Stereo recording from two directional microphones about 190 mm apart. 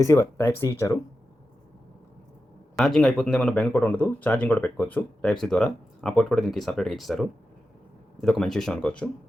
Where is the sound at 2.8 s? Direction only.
Centre (ahead or behind).